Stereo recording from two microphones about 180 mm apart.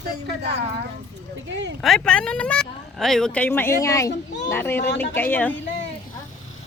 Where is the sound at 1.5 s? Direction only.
80° right.